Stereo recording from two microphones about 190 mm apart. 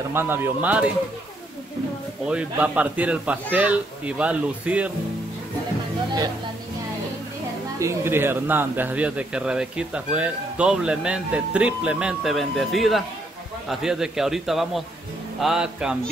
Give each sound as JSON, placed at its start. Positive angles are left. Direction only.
{"t": 0.1, "sound": "a man's voice", "side_deg": -10}
{"t": 2.2, "sound": "a man's voice", "side_deg": -5}
{"t": 7.8, "sound": "speech", "side_deg": -10}